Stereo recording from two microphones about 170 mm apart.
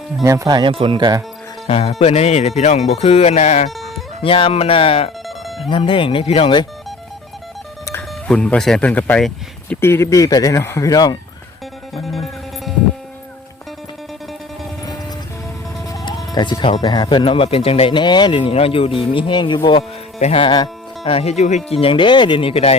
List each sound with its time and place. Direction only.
0.2 s speech: 20° right (ahead or behind)
1.6 s speech: 40° left (ahead or behind)
8.3 s speech: 5° left (ahead or behind); by 11.2 s 25° left (ahead or behind)
12.0 s music: centre (ahead or behind)
15.9 s speech: 25° left (ahead or behind)